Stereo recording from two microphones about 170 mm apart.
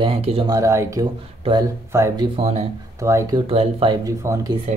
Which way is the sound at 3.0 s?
15° right (ahead or behind).